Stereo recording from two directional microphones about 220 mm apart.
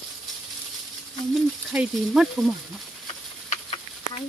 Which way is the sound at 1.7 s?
5° right (ahead or behind).